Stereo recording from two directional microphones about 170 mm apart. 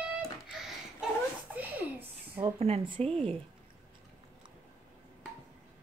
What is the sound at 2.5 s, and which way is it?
Speech, 35° right (ahead or behind).